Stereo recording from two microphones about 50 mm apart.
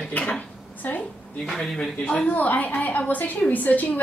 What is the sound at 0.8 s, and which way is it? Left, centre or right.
Speech, left.